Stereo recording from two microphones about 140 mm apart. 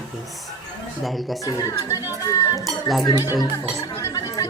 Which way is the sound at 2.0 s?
25° left (ahead or behind).